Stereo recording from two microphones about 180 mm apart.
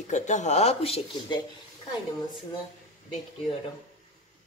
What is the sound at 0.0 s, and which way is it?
Speech, 40° left (ahead or behind).